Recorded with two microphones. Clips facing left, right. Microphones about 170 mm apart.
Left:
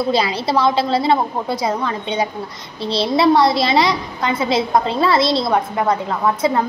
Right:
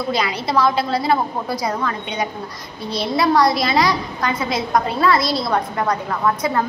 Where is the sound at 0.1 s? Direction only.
30° left (ahead or behind).